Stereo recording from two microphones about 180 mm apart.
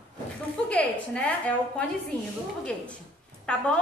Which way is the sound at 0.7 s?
10° left (ahead or behind).